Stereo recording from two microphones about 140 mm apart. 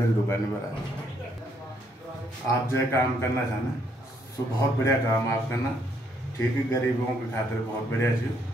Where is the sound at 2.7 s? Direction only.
20° left (ahead or behind).